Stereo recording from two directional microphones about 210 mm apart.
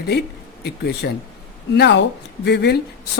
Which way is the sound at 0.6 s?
50° left (ahead or behind).